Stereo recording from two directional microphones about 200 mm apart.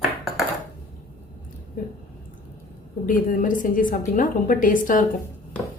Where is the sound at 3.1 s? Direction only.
40° left (ahead or behind).